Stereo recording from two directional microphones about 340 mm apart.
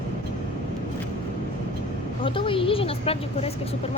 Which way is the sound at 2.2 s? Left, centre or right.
Centre.